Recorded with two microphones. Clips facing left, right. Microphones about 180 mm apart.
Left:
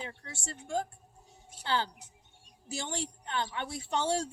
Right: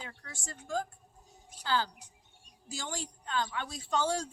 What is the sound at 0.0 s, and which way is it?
A woman's voice, 25° left (ahead or behind).